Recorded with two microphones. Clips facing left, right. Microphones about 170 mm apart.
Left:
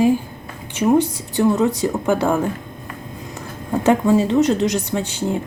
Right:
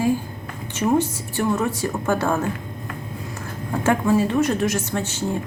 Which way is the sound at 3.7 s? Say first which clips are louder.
Left 4 dB; 20° left (ahead or behind).